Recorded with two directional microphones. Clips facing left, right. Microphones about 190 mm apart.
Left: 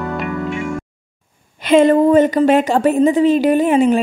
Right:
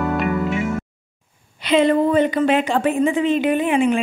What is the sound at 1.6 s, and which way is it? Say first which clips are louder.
A woman's voice: left 5 dB; 45° left (ahead or behind).